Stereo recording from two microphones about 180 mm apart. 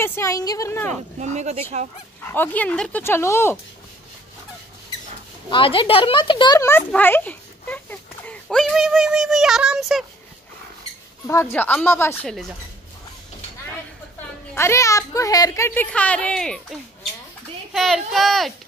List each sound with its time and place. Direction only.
0.0 s speech: 15° left (ahead or behind)
1.2 s speech: 40° right (ahead or behind)
2.2 s speech: 10° left (ahead or behind)
5.5 s speech: 30° left (ahead or behind); by 10.0 s centre (ahead or behind)
11.5 s speech: 10° left (ahead or behind)
14.5 s speech: 15° left (ahead or behind)
17.7 s speech: centre (ahead or behind)